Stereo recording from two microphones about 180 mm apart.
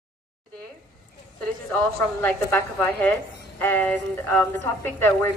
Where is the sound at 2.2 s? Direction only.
10° left (ahead or behind).